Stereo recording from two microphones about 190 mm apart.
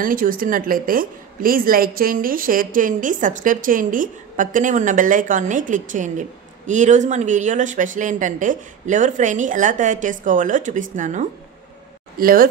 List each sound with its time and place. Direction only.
0.0 s a woman's voice: 45° right (ahead or behind)